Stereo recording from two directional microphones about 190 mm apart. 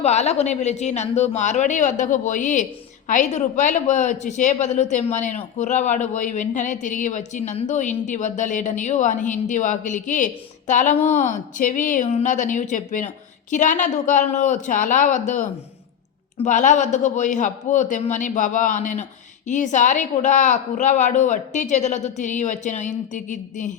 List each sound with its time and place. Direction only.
0.0 s a woman's voice: 35° left (ahead or behind)